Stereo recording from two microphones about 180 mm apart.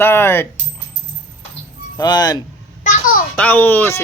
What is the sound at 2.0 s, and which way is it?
Speech, 20° left (ahead or behind).